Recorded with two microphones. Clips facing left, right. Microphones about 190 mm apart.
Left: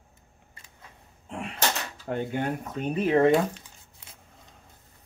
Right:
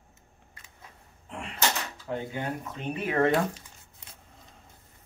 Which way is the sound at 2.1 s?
55° left (ahead or behind).